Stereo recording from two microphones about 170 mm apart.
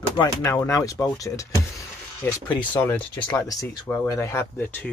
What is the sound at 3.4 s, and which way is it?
Speech, 20° left (ahead or behind).